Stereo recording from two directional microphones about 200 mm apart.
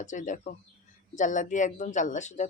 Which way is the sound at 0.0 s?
40° left (ahead or behind).